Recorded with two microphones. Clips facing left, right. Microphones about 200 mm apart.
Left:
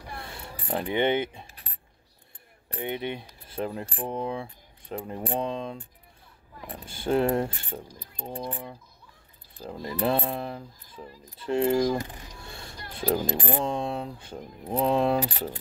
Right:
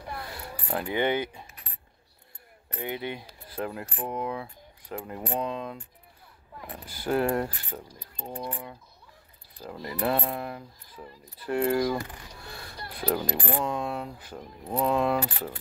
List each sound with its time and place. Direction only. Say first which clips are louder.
0.1 s keys jangling: right 2 dB; 25° left (ahead or behind)
2.7 s speech: left 2 dB; 20° left (ahead or behind)
15.2 s speech: left 2 dB; 20° left (ahead or behind)